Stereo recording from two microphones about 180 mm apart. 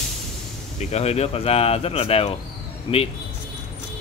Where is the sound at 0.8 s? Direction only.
35° left (ahead or behind).